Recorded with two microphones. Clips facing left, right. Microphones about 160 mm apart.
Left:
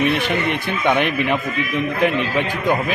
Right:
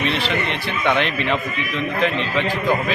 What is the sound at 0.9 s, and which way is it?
Speech, 10° left (ahead or behind).